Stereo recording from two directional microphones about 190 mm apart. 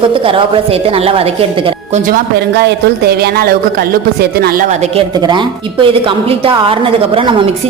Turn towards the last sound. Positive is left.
turn(degrees=-25)  # may be behind; listen again after turning